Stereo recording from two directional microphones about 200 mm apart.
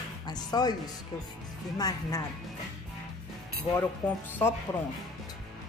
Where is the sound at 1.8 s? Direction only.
15° left (ahead or behind).